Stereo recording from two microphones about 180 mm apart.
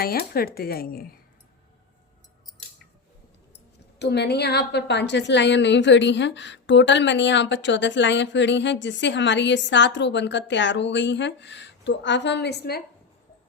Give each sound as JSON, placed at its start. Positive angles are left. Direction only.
{"t": 0.0, "sound": "speech", "side_deg": 55}
{"t": 3.9, "sound": "a woman's voice", "side_deg": 70}